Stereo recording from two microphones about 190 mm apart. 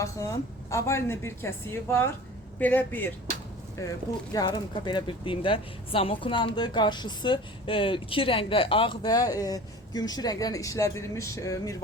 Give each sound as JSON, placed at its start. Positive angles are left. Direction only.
{"t": 0.0, "sound": "a woman's voice", "side_deg": 15}
{"t": 4.4, "sound": "speech", "side_deg": 25}